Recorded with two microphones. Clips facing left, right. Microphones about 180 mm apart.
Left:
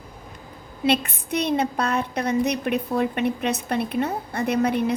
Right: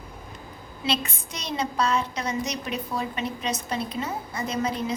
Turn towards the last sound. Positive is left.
turn(degrees=60)  # may be behind; listen again after turning